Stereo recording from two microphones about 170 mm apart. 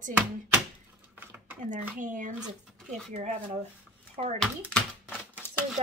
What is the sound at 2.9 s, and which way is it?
Speech, centre (ahead or behind).